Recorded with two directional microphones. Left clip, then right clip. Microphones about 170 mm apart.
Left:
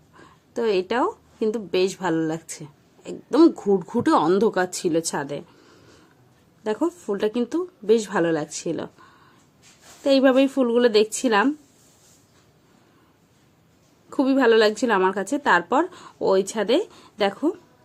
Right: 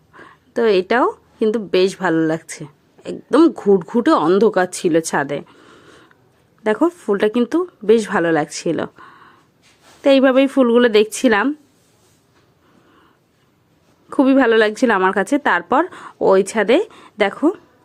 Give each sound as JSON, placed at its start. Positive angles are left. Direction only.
{"t": 0.1, "sound": "a woman's voice", "side_deg": -15}
{"t": 14.1, "sound": "a woman's voice", "side_deg": -20}